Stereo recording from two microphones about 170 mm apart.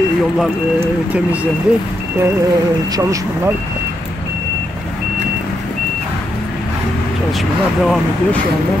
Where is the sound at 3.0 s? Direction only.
20° right (ahead or behind).